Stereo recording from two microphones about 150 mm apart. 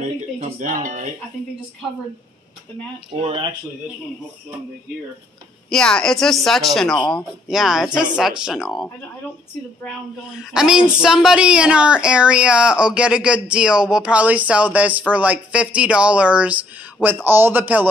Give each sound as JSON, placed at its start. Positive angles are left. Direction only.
{"t": 0.4, "sound": "speech", "side_deg": -55}
{"t": 3.1, "sound": "speech", "side_deg": -40}
{"t": 5.7, "sound": "speech", "side_deg": 5}
{"t": 10.3, "sound": "speech", "side_deg": -5}